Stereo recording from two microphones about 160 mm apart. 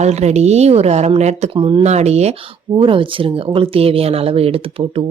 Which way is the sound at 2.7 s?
30° right (ahead or behind).